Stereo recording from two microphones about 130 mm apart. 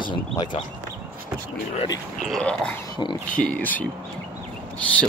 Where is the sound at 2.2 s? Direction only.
5° left (ahead or behind).